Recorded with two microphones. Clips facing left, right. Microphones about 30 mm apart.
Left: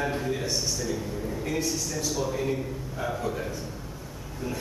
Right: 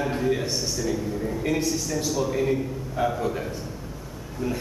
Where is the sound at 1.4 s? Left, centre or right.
Right.